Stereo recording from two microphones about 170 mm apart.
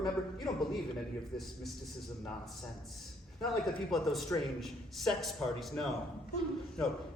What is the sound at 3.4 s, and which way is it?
A man's voice, centre (ahead or behind).